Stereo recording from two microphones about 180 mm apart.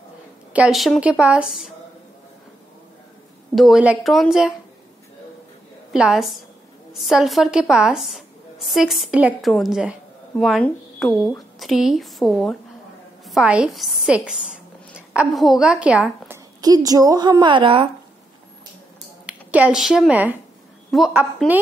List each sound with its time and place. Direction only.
0.5 s a woman's voice: 5° right (ahead or behind)
3.5 s a woman's voice: centre (ahead or behind)
5.9 s a woman's voice: 5° right (ahead or behind)
16.6 s a woman's voice: 20° right (ahead or behind)
19.2 s a woman's voice: 5° right (ahead or behind)